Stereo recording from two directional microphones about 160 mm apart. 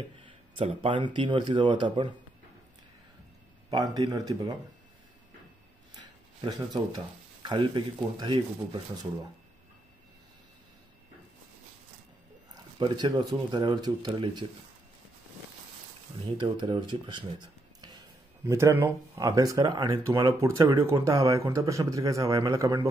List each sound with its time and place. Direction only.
0.2 s speech: 35° right (ahead or behind)
3.7 s a man's voice: 25° right (ahead or behind)
7.4 s speech: 30° right (ahead or behind)
12.7 s a man's voice: 30° right (ahead or behind)
16.3 s a man's voice: 30° right (ahead or behind)
18.4 s a man's voice: 20° right (ahead or behind)